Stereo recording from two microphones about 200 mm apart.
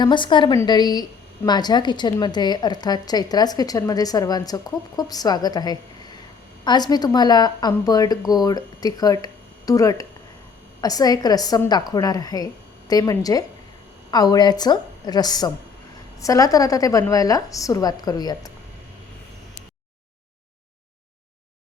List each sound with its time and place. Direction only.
0.0 s a woman's voice: 25° left (ahead or behind)